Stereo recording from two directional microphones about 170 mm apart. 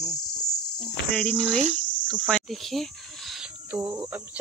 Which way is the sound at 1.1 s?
5° left (ahead or behind).